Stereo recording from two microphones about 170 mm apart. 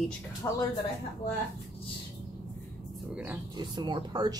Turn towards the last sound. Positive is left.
turn(degrees=-25)  # may be behind; listen again after turning